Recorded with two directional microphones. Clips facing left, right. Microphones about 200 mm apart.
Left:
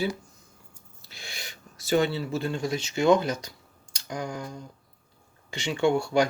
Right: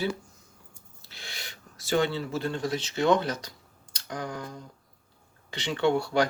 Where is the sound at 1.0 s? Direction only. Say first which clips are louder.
Left 1 dB; 10° left (ahead or behind).